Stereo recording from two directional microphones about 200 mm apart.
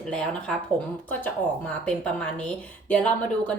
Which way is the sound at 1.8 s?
5° left (ahead or behind).